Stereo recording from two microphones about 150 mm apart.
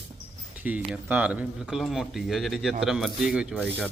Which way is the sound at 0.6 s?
10° right (ahead or behind).